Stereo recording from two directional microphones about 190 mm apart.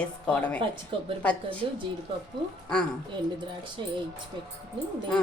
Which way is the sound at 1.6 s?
30° right (ahead or behind).